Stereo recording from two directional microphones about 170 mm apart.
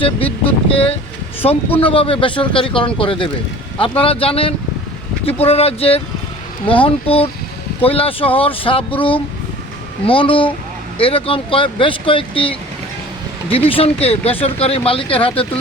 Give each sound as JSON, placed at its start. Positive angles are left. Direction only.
{"t": 0.0, "sound": "speech", "side_deg": 35}
{"t": 13.7, "sound": "speech", "side_deg": 35}